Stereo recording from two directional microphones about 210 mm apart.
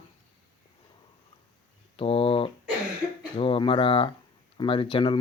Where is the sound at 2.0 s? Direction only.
25° left (ahead or behind).